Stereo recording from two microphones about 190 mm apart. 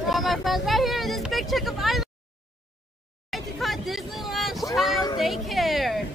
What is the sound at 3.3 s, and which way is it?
Vehicle, centre (ahead or behind).